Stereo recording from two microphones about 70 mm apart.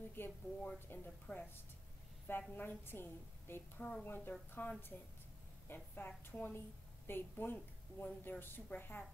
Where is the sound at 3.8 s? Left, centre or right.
Centre.